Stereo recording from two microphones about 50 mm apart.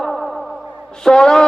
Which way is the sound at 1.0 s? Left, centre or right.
Centre.